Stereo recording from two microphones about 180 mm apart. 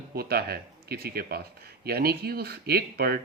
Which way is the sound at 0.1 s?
60° right (ahead or behind).